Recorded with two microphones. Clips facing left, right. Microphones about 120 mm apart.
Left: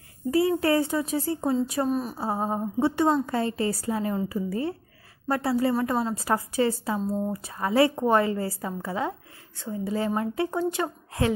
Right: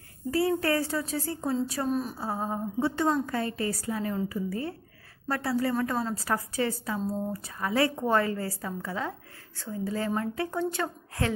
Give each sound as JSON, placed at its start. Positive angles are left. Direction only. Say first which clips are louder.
{"t": 0.3, "sound": "a woman's voice", "louder": "left 4 dB", "side_deg": 20}
{"t": 1.9, "sound": "a woman's voice", "louder": "left 2 dB", "side_deg": 0}
{"t": 2.1, "sound": "a woman's voice", "louder": "left 4 dB", "side_deg": 25}